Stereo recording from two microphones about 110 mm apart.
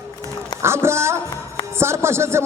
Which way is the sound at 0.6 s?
25° right (ahead or behind).